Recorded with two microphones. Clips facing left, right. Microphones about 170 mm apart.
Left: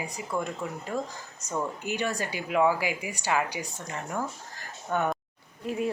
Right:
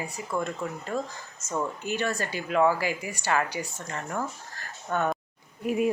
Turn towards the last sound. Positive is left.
turn(degrees=-15)  # may be behind; listen again after turning